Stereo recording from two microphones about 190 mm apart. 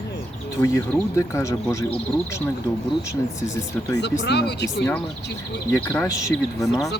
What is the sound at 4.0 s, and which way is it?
Speech, 60° left (ahead or behind).